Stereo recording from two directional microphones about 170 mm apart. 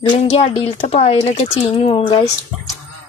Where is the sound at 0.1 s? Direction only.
35° left (ahead or behind).